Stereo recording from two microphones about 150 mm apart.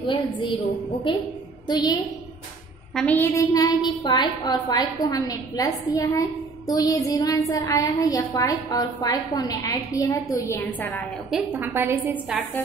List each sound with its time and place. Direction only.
0.0 s a woman's voice: 30° left (ahead or behind)
1.7 s a woman's voice: 30° left (ahead or behind)
2.9 s a woman's voice: 5° left (ahead or behind)
3.2 s a woman's voice: 20° left (ahead or behind)
10.5 s a woman's voice: 10° left (ahead or behind)
11.2 s a woman's voice: 10° right (ahead or behind)